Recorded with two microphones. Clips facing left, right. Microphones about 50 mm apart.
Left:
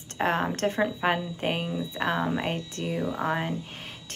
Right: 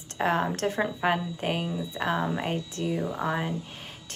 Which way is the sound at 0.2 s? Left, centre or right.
Left.